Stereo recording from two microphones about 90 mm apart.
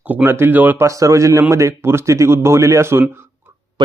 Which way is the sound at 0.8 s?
35° right (ahead or behind).